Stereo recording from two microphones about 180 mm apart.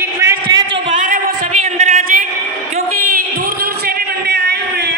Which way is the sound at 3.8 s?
60° right (ahead or behind).